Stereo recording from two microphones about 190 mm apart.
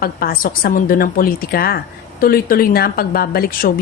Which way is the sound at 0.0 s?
50° left (ahead or behind).